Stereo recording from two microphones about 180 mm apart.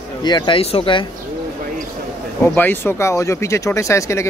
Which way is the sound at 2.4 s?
10° left (ahead or behind).